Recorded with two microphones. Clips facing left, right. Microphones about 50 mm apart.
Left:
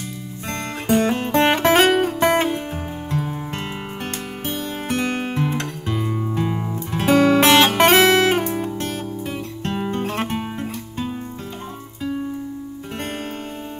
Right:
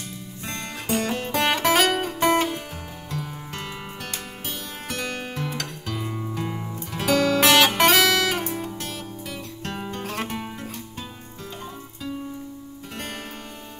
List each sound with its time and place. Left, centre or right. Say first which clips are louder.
0.5 s music: left 7 dB; left
5.9 s music: left 6 dB; centre
6.3 s music: left 6 dB; left